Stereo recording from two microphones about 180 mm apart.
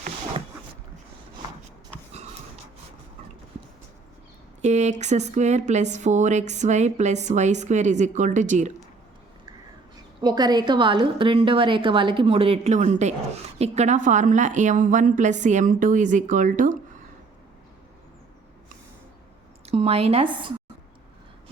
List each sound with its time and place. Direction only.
4.6 s speech: 40° right (ahead or behind)
10.2 s a woman's voice: 20° right (ahead or behind); by 16.7 s 45° right (ahead or behind)
19.6 s speech: 35° right (ahead or behind)